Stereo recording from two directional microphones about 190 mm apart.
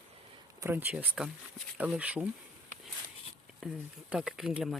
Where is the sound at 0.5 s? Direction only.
10° right (ahead or behind).